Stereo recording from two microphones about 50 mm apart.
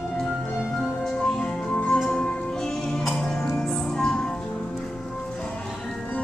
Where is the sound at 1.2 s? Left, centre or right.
Centre.